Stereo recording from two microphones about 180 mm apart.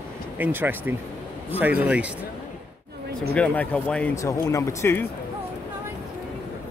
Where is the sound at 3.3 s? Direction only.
5° left (ahead or behind).